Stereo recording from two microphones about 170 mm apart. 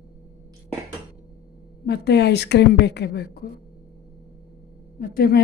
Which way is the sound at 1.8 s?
75° left (ahead or behind).